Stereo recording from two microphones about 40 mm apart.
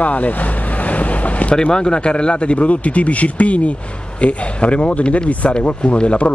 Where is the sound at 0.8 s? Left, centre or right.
Left.